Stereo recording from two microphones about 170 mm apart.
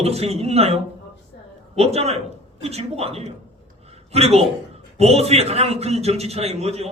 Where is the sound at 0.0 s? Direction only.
35° right (ahead or behind).